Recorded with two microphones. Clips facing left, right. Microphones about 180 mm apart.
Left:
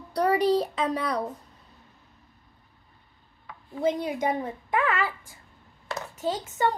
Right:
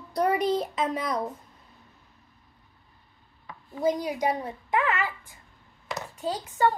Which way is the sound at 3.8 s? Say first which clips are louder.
Even; 25° left (ahead or behind).